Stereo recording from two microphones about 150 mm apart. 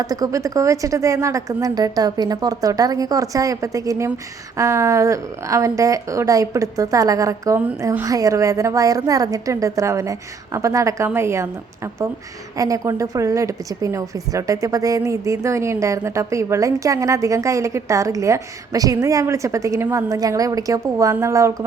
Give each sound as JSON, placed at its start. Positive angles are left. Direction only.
{"t": 0.0, "sound": "a woman's voice", "side_deg": -25}